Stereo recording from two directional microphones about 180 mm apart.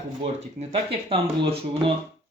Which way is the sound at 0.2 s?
35° right (ahead or behind).